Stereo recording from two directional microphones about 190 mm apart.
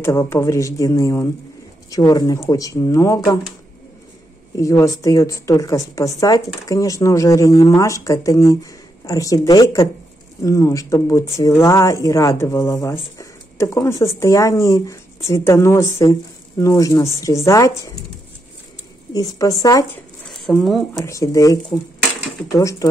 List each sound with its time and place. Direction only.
0.0 s speech: 15° left (ahead or behind)
4.6 s speech: 15° left (ahead or behind)
19.1 s speech: 20° left (ahead or behind)
20.2 s a sound: centre (ahead or behind)
20.9 s speech: 15° left (ahead or behind)